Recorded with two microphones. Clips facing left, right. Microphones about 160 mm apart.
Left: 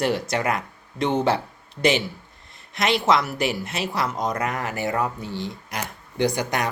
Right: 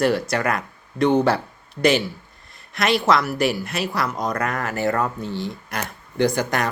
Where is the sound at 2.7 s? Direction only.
20° left (ahead or behind).